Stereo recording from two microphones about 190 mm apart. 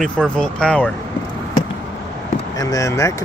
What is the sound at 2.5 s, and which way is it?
Speech, 15° left (ahead or behind).